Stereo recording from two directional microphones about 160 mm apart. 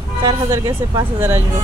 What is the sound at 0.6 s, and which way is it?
Speech, 15° right (ahead or behind).